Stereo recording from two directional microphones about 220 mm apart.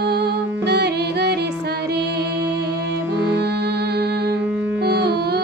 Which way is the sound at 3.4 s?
50° right (ahead or behind).